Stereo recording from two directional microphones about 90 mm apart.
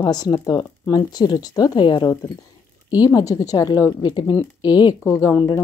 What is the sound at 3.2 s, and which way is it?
Speech, 40° left (ahead or behind).